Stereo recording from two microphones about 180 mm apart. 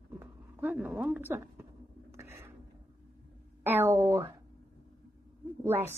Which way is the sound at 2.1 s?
15° right (ahead or behind).